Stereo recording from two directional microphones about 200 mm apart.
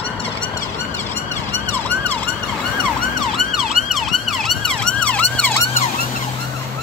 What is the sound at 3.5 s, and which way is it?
Emergency vehicle, centre (ahead or behind).